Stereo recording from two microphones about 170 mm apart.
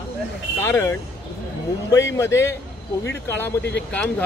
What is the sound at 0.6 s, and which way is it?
Speech, 15° left (ahead or behind).